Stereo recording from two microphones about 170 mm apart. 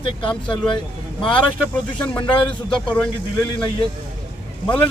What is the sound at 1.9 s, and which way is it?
Speech, 30° left (ahead or behind).